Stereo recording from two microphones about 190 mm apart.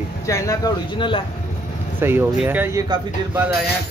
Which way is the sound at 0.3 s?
15° left (ahead or behind).